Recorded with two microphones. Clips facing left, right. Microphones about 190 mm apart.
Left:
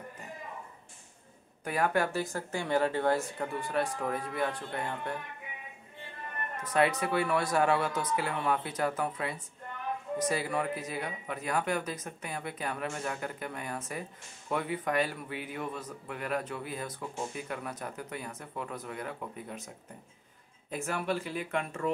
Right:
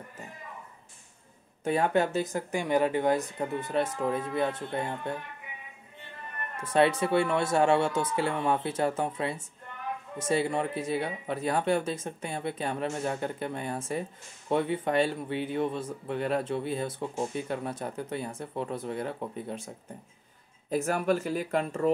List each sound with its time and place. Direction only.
1.6 s speech: 25° right (ahead or behind)
6.5 s speech: 30° right (ahead or behind)
20.7 s speech: 40° right (ahead or behind)